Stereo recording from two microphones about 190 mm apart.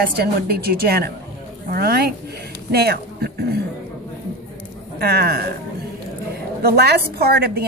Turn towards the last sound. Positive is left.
turn(degrees=-55)  # may be behind; listen again after turning